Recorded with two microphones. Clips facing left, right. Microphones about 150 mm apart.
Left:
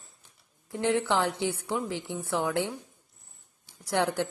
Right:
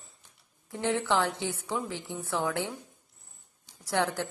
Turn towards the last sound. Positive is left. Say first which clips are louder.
# left 2 dB
turn(degrees=15)  # may be behind; listen again after turning